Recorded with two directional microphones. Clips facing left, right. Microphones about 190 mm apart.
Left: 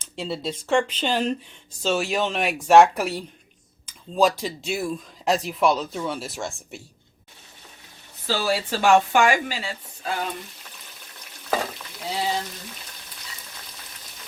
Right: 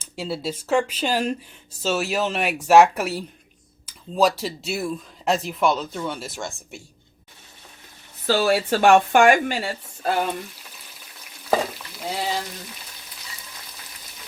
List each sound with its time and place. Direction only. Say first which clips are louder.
0.0 s speech: right 1 dB; 5° right (ahead or behind)
8.3 s speech: right 5 dB; 55° right (ahead or behind)